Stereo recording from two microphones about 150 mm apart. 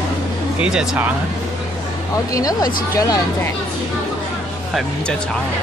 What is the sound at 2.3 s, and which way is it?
Speech, 25° left (ahead or behind).